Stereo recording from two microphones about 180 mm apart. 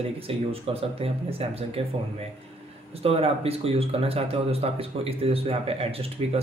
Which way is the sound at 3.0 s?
35° right (ahead or behind).